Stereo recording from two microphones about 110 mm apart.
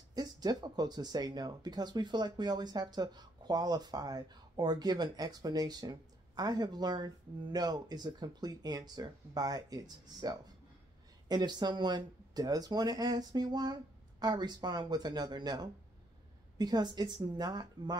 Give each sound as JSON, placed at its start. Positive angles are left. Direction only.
{"t": 0.1, "sound": "speech", "side_deg": -35}